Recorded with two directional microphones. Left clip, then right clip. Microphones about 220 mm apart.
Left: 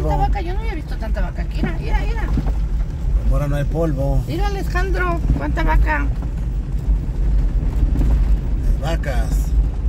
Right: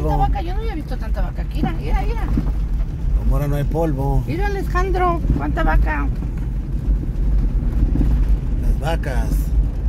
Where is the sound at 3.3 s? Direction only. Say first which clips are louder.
Even; 25° right (ahead or behind).